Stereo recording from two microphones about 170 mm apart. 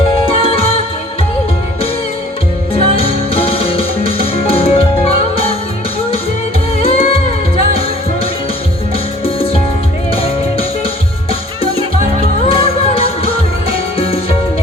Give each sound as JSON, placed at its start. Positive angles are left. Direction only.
{"t": 0.3, "sound": "music", "side_deg": 35}
{"t": 2.9, "sound": "music", "side_deg": 35}
{"t": 6.7, "sound": "music", "side_deg": 35}